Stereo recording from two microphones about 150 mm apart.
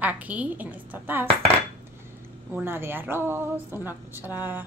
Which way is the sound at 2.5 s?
15° right (ahead or behind).